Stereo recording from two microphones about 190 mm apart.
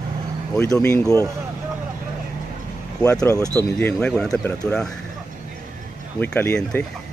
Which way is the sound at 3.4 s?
15° right (ahead or behind).